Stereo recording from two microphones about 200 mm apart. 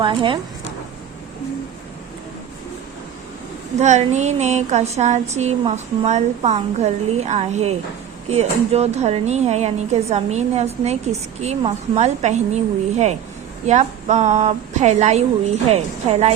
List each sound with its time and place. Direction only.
0.0 s speech: 25° right (ahead or behind)
3.8 s a woman's voice: 35° right (ahead or behind)